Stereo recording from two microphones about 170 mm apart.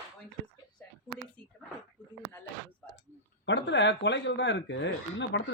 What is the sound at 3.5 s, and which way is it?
A woman's voice, 90° left.